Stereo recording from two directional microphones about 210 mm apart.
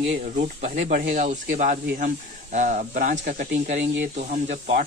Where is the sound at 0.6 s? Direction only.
35° right (ahead or behind).